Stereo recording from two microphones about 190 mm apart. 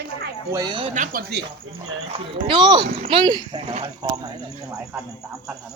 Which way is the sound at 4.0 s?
20° right (ahead or behind).